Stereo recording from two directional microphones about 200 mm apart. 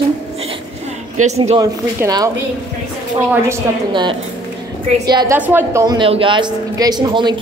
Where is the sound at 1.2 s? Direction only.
90° right.